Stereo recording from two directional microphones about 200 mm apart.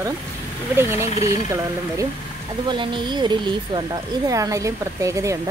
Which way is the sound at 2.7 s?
25° right (ahead or behind).